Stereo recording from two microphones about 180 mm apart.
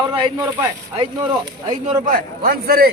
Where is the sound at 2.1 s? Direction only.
55° right (ahead or behind).